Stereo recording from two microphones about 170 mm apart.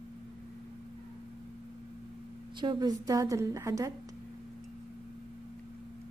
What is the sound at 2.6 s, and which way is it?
A woman's voice, 25° right (ahead or behind).